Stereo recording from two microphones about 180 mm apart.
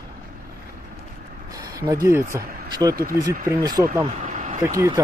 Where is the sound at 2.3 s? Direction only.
20° right (ahead or behind).